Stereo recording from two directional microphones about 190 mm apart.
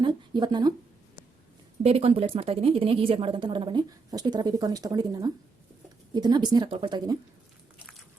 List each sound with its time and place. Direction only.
0.0 s speech: 25° right (ahead or behind)
1.8 s a woman's voice: 30° right (ahead or behind)